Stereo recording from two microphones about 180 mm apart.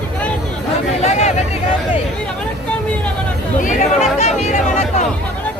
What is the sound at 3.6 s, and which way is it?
Speech, 45° left (ahead or behind).